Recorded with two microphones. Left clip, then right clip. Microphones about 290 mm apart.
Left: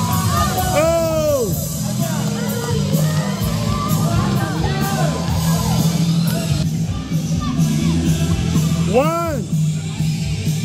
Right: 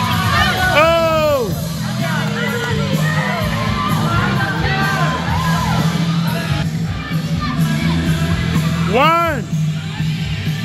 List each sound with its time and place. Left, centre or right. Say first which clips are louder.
0.7 s music: right 3 dB; centre
8.9 s music: right 4 dB; centre